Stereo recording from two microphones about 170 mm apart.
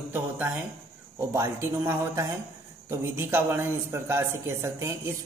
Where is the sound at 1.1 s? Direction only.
15° right (ahead or behind).